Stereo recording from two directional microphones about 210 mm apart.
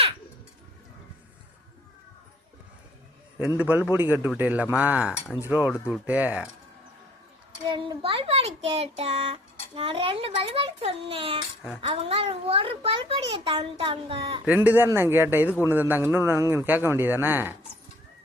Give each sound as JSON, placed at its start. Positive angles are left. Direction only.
{"t": 3.6, "sound": "a man's voice", "side_deg": -10}
{"t": 7.7, "sound": "a child's voice", "side_deg": -25}
{"t": 14.4, "sound": "a man's voice", "side_deg": -5}